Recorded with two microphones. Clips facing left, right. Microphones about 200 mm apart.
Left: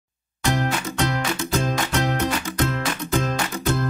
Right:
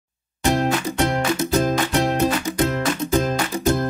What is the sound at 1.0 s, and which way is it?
Music, 30° right (ahead or behind).